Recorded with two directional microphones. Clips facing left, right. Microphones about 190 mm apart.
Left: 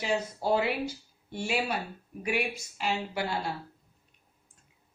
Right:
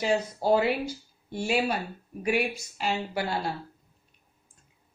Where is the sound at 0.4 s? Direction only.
40° right (ahead or behind).